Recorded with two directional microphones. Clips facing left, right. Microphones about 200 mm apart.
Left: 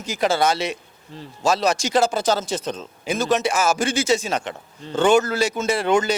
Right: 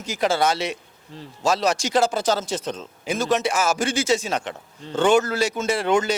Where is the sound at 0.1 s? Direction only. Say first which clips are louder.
Left 1 dB; 10° left (ahead or behind).